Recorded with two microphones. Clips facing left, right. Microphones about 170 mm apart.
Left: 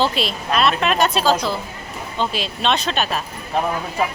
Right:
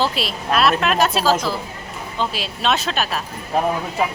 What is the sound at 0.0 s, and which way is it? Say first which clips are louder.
Speech: left 1 dB; centre (ahead or behind).